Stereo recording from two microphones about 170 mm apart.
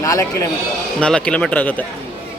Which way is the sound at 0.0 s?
20° left (ahead or behind).